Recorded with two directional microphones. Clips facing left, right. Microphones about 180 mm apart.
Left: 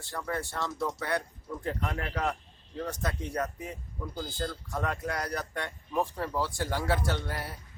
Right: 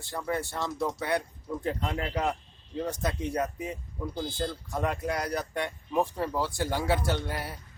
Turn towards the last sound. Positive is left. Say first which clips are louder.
# right 2 dB
turn(degrees=-15)  # may be behind; listen again after turning